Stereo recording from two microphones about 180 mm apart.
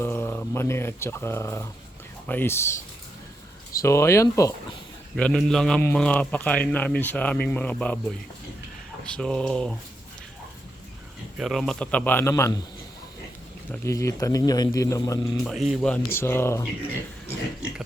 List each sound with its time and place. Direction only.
0.0 s a man's voice: 10° left (ahead or behind)
3.8 s a man's voice: 15° left (ahead or behind)
5.1 s a man's voice: centre (ahead or behind)
11.3 s a man's voice: centre (ahead or behind); by 12.5 s 15° left (ahead or behind)
13.7 s speech: 15° left (ahead or behind)
15.4 s a man's voice: centre (ahead or behind)